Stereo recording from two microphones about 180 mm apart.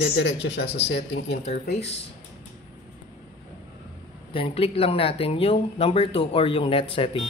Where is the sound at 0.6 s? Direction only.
70° left (ahead or behind).